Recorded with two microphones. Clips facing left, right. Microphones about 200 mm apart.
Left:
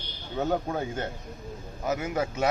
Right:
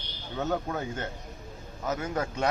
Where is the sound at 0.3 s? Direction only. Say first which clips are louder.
Left 2 dB; 10° left (ahead or behind).